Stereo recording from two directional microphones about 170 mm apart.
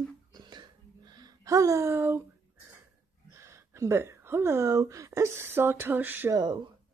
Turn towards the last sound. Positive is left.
turn(degrees=-10)  # may be behind; listen again after turning